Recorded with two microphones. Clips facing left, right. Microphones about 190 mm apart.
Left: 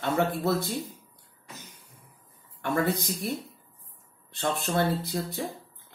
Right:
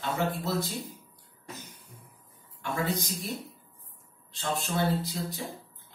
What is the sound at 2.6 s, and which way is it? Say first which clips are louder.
A man's voice: left 4 dB; 55° left (ahead or behind).